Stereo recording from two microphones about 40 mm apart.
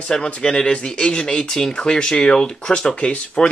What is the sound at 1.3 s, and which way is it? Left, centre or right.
Speech, centre.